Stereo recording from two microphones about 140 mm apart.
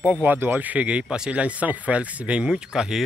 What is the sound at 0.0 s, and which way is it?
Speech, 10° right (ahead or behind).